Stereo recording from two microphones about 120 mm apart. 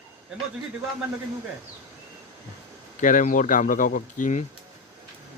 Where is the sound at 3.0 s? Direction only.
90° left.